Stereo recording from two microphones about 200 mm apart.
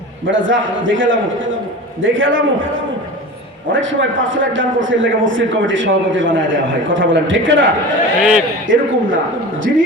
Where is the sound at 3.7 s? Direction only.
70° right (ahead or behind).